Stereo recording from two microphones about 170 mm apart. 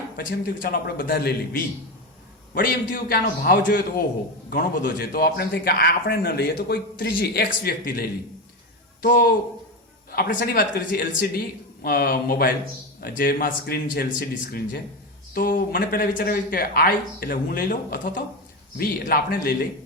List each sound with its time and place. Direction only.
0.3 s a man's voice: 60° left (ahead or behind)
2.6 s a man's voice: 55° left (ahead or behind)